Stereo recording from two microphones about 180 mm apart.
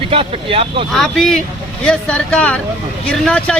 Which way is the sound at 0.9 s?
Centre (ahead or behind).